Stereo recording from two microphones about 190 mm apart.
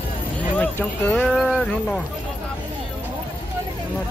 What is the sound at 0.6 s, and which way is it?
Speech, 5° left (ahead or behind).